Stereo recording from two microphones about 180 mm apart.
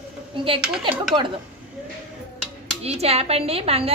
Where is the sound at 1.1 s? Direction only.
25° right (ahead or behind).